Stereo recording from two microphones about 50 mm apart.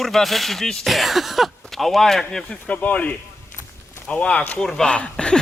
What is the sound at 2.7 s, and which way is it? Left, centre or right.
Speech, left.